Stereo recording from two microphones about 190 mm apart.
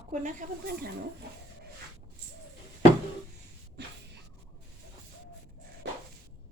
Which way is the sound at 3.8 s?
60° right (ahead or behind).